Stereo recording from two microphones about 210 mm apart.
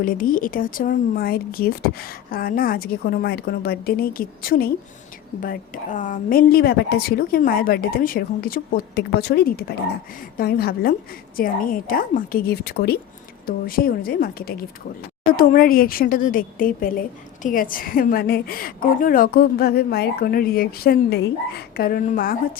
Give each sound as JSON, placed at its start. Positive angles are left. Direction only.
{"t": 0.0, "sound": "a woman's voice", "side_deg": 40}